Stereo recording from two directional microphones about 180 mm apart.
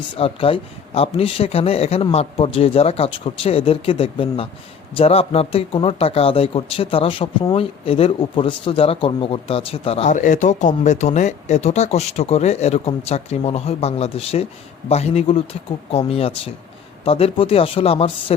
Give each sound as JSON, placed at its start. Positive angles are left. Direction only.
{"t": 0.2, "sound": "speech", "side_deg": 30}